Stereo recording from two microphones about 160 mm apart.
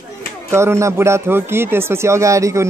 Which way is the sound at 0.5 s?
15° right (ahead or behind).